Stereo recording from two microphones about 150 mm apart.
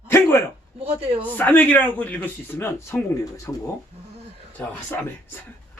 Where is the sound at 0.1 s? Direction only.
15° left (ahead or behind).